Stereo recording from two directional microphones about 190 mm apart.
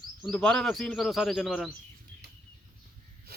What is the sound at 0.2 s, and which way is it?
Speech, 5° left (ahead or behind).